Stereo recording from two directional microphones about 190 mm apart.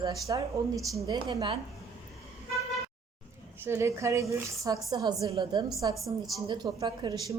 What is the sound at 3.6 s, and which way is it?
A woman's voice, 15° right (ahead or behind).